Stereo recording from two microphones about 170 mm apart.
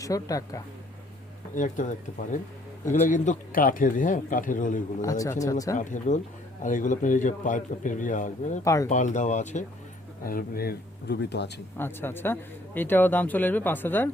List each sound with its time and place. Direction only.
0.0 s speech: 20° left (ahead or behind)
1.5 s speech: 50° left (ahead or behind)
5.0 s speech: 20° left (ahead or behind)
5.7 s speech: 45° left (ahead or behind)
8.6 s speech: 20° left (ahead or behind)
8.9 s speech: 45° left (ahead or behind)
10.2 s speech: 60° left (ahead or behind); by 11.6 s 85° left
11.8 s a man's voice: 15° left (ahead or behind)